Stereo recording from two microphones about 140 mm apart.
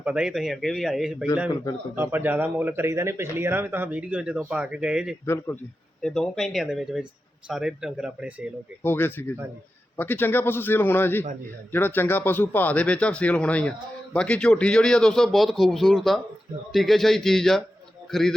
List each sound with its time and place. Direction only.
0.0 s speech: 5° right (ahead or behind)
2.0 s speech: 15° right (ahead or behind)
5.2 s speech: 15° left (ahead or behind)
6.0 s speech: 5° left (ahead or behind)
8.8 s speech: 15° left (ahead or behind)